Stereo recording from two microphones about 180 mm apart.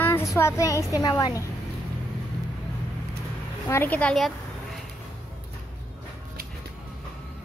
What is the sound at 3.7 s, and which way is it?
Speech, 10° left (ahead or behind).